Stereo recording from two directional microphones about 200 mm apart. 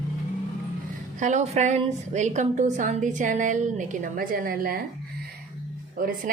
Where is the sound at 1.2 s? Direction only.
35° right (ahead or behind).